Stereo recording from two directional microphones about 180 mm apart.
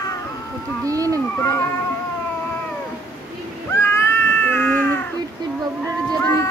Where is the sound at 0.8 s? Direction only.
20° right (ahead or behind).